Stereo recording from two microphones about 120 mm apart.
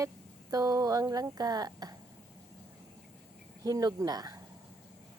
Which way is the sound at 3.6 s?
30° right (ahead or behind).